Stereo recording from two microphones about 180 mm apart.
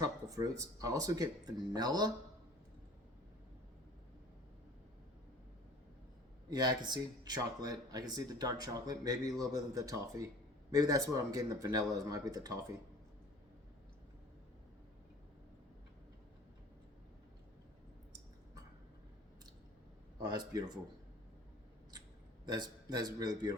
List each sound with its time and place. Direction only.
0.0 s speech: 20° right (ahead or behind)
6.5 s speech: 25° right (ahead or behind)
20.1 s speech: 20° right (ahead or behind)
22.4 s speech: 20° right (ahead or behind)